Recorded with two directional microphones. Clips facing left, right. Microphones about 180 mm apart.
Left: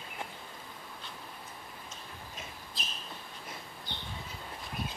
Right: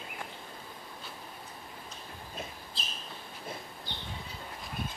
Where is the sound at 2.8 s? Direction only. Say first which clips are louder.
Even; 30° right (ahead or behind).